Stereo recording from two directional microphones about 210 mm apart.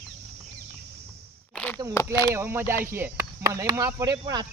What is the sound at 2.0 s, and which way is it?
Speech, 10° left (ahead or behind).